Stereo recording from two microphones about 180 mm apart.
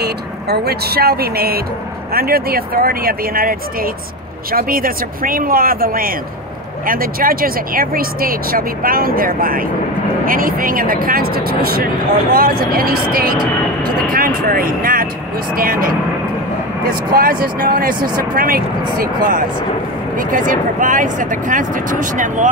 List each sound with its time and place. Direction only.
0.0 s speech: 60° right (ahead or behind); by 22.5 s 45° right (ahead or behind)